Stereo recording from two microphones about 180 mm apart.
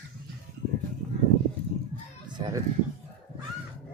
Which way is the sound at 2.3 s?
25° right (ahead or behind).